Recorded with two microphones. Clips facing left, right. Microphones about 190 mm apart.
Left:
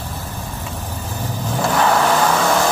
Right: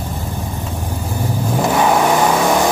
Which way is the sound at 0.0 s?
15° right (ahead or behind).